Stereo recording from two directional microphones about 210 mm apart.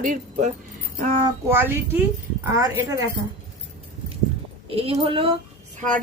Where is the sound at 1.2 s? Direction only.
10° right (ahead or behind).